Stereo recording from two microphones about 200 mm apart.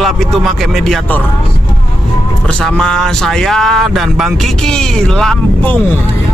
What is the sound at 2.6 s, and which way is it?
Speech, 5° left (ahead or behind).